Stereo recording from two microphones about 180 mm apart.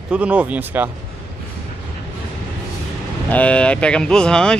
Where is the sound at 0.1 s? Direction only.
5° right (ahead or behind).